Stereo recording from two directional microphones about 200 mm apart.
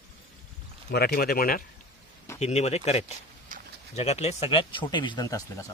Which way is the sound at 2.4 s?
30° left (ahead or behind).